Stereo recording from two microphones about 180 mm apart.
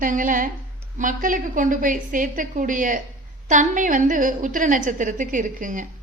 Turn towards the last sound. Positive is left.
turn(degrees=-45)  # may be behind; listen again after turning